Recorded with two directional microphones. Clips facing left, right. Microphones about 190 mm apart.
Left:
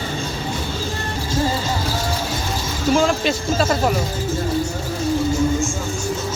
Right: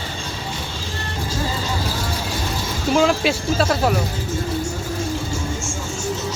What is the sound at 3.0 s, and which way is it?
Speech, 5° right (ahead or behind).